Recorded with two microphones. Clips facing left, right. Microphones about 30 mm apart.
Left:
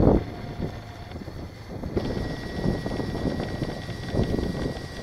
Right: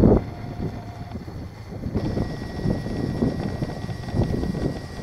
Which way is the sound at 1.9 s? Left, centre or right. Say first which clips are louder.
Right 2 dB; centre.